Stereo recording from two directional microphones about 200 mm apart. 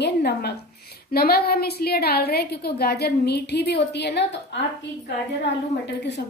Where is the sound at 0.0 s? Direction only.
55° left (ahead or behind).